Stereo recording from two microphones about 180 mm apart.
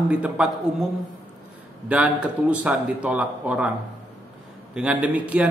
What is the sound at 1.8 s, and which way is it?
Speech, 5° right (ahead or behind).